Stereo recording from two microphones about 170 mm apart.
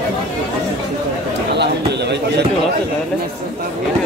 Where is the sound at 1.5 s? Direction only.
80° right.